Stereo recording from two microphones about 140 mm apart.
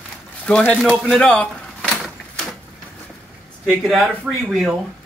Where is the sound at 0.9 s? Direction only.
Centre (ahead or behind).